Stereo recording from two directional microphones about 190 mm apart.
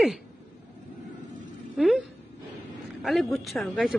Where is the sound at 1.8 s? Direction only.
Centre (ahead or behind).